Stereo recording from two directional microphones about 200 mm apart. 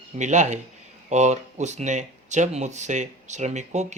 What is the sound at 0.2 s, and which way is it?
Speech, 35° right (ahead or behind).